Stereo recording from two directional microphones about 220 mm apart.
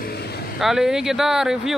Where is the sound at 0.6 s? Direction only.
Centre (ahead or behind).